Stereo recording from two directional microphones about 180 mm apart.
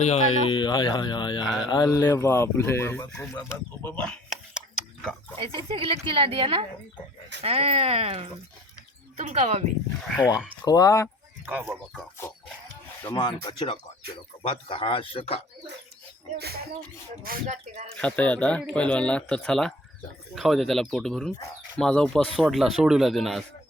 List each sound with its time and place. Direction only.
0.0 s speech: 40° left (ahead or behind); by 3.4 s 10° left (ahead or behind)
4.1 s a sound: centre (ahead or behind)
5.5 s speech: 30° right (ahead or behind)
10.1 s speech: 5° right (ahead or behind)
10.7 s speech: 20° left (ahead or behind)
11.4 s speech: 10° right (ahead or behind)
13.1 s speech: 25° left (ahead or behind)
17.2 s speech: 45° right (ahead or behind)
17.9 s speech: 5° left (ahead or behind)